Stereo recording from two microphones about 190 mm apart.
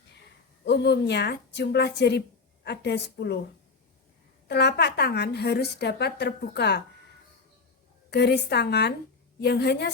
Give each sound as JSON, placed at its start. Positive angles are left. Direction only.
{"t": 0.6, "sound": "a woman's voice", "side_deg": 60}
{"t": 4.4, "sound": "a woman's voice", "side_deg": 60}
{"t": 8.1, "sound": "a woman's voice", "side_deg": 60}